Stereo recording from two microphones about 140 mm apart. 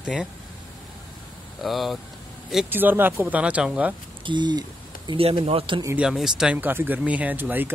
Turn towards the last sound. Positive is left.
turn(degrees=-15)  # may be behind; listen again after turning